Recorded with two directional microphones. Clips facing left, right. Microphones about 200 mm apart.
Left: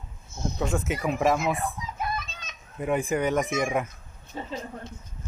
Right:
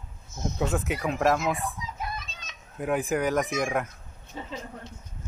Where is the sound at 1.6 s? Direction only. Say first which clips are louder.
Left 3 dB; 55° left (ahead or behind).